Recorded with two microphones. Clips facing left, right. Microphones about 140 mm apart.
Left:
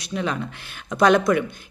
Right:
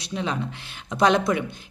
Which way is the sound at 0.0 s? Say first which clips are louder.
Left 2 dB; 25° right (ahead or behind).